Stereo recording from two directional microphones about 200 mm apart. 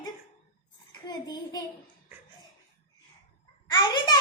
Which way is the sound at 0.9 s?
20° left (ahead or behind).